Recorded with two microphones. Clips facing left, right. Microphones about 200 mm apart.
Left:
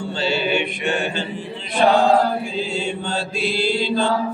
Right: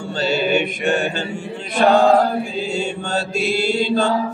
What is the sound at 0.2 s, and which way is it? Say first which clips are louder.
Mantra: right 3 dB; 45° right (ahead or behind).